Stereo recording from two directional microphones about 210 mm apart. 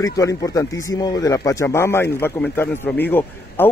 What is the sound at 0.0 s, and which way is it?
Speech, 15° left (ahead or behind).